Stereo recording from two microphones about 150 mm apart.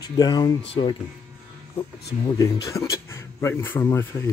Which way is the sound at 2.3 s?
25° left (ahead or behind).